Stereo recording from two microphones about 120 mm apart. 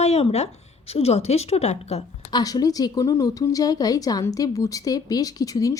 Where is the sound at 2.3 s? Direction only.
35° left (ahead or behind).